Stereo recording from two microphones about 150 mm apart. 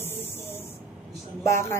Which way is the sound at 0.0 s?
15° left (ahead or behind).